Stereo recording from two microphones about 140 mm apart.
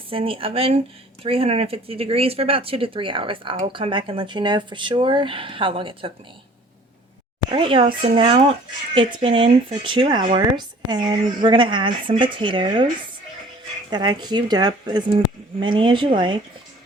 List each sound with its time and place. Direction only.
0.1 s speech: 40° right (ahead or behind)
7.5 s speech: 35° right (ahead or behind)
13.9 s speech: 30° right (ahead or behind)